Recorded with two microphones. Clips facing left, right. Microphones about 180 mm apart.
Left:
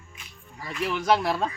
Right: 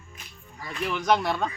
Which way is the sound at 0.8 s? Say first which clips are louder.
Left 1 dB; 5° left (ahead or behind).